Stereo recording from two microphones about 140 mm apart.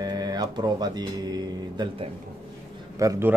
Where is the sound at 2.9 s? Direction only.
20° right (ahead or behind).